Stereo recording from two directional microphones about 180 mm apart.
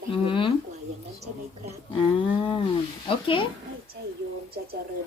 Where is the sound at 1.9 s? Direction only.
30° left (ahead or behind).